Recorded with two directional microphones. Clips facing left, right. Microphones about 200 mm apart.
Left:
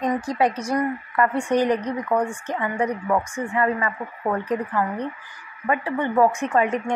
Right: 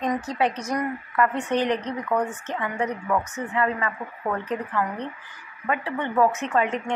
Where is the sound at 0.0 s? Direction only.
10° left (ahead or behind).